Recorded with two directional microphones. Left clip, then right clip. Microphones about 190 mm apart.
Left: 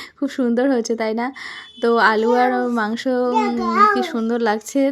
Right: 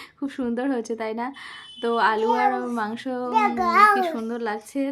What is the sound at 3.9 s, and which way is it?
Speech, 30° left (ahead or behind).